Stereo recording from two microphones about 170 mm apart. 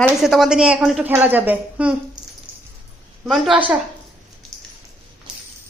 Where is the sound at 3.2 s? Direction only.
Centre (ahead or behind).